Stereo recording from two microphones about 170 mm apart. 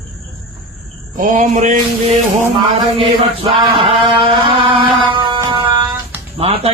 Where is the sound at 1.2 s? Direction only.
45° right (ahead or behind).